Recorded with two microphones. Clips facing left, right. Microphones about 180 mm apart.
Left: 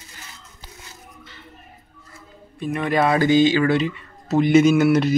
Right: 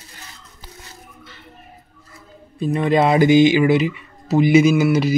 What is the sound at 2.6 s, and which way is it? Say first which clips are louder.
Speech: right 4 dB; 30° right (ahead or behind).